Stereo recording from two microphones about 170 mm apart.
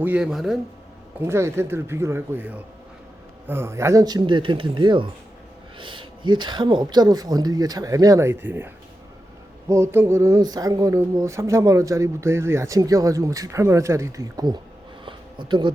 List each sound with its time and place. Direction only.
0.0 s speech: 5° right (ahead or behind)
1.2 s speech: 15° right (ahead or behind)
15.0 s a sound: 25° right (ahead or behind)